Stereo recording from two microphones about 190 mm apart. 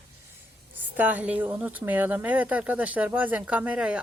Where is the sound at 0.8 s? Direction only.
10° right (ahead or behind).